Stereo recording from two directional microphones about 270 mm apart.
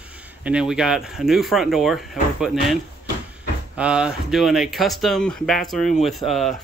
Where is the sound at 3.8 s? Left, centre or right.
Centre.